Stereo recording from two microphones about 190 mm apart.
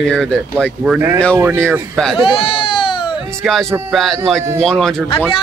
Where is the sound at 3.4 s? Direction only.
Centre (ahead or behind).